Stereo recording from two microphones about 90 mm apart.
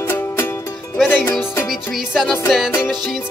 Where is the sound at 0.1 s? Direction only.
25° left (ahead or behind).